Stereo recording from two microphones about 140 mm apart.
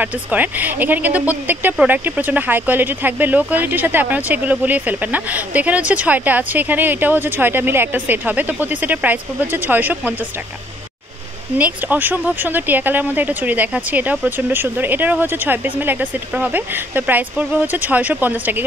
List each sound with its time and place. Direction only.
0.0 s speech: 10° right (ahead or behind)
11.5 s speech: 10° right (ahead or behind)